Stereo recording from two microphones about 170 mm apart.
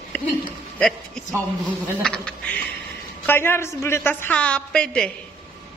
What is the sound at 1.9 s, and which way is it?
Duck, 5° left (ahead or behind).